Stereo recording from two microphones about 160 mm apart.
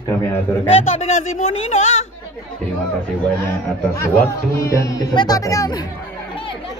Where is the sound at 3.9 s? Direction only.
20° left (ahead or behind).